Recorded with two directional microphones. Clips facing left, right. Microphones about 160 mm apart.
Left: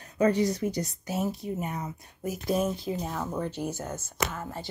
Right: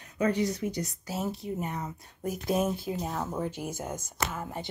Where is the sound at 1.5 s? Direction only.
5° left (ahead or behind); by 4.7 s 15° right (ahead or behind).